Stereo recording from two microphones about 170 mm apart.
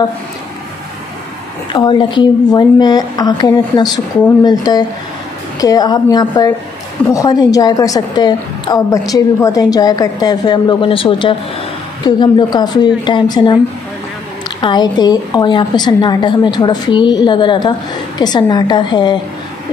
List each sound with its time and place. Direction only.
1.7 s a woman's voice: 25° left (ahead or behind)
14.6 s a woman's voice: 25° left (ahead or behind)